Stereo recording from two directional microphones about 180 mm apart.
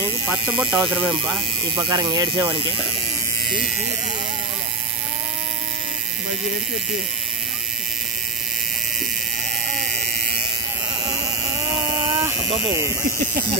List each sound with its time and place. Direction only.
0.6 s speech: 5° right (ahead or behind)
1.8 s speech: 20° right (ahead or behind)
11.7 s a sound: 20° right (ahead or behind)